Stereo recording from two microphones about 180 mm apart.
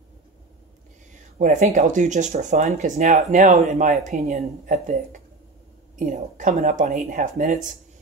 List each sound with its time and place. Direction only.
1.4 s speech: 45° right (ahead or behind)
5.9 s speech: 45° right (ahead or behind)